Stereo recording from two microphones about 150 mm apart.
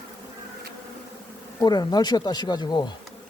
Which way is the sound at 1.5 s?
25° left (ahead or behind).